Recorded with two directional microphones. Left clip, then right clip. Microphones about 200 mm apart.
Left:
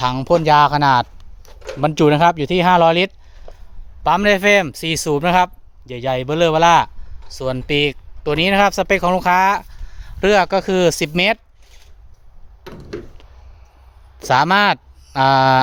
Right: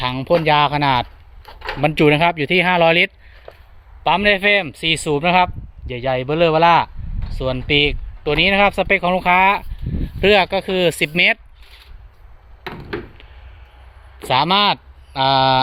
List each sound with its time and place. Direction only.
0.0 s speech: 25° left (ahead or behind)
1.4 s a sound: 5° right (ahead or behind)
1.8 s speech: 20° left (ahead or behind)
4.0 s speech: 30° left (ahead or behind)
7.3 s speech: 30° left (ahead or behind)
12.6 s a sound: 5° right (ahead or behind)
14.3 s speech: 40° left (ahead or behind)